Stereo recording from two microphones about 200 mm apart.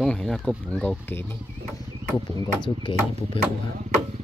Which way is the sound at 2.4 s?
25° left (ahead or behind).